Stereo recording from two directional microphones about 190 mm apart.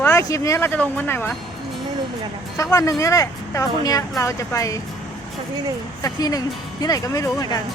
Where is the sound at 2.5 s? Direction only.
15° left (ahead or behind).